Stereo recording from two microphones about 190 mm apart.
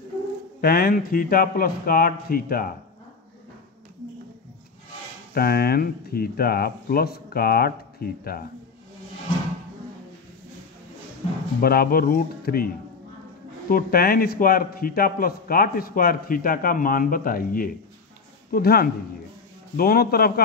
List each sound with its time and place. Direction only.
0.6 s a man's voice: 55° left (ahead or behind)
5.3 s a man's voice: 55° left (ahead or behind)
11.6 s a man's voice: 50° left (ahead or behind)